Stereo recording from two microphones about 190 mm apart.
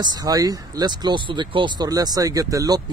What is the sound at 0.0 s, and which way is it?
Speech, 20° right (ahead or behind).